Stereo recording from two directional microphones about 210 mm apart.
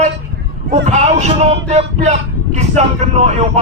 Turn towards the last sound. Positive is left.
turn(degrees=-30)  # may be behind; listen again after turning